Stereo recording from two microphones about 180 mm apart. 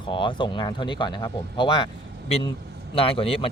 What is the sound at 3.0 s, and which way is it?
Speech, 30° left (ahead or behind).